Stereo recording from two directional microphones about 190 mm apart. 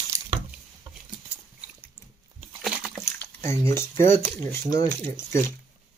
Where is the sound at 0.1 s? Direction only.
15° right (ahead or behind).